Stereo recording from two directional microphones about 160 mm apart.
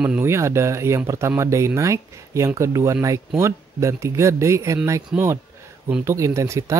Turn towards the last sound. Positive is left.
turn(degrees=-20)  # may be behind; listen again after turning